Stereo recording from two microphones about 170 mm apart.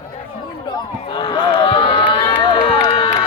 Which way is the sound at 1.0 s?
30° left (ahead or behind).